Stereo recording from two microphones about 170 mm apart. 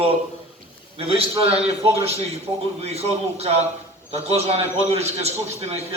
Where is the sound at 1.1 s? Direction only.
35° right (ahead or behind).